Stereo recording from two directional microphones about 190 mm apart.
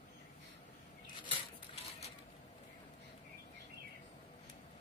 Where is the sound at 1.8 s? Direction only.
35° left (ahead or behind).